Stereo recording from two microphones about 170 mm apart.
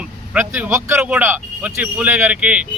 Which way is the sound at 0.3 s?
10° right (ahead or behind).